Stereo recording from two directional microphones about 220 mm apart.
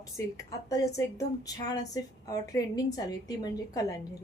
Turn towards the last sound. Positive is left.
turn(degrees=15)  # may be behind; listen again after turning